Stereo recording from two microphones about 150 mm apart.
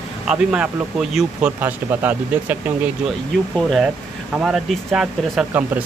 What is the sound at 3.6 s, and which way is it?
Speech, 5° left (ahead or behind).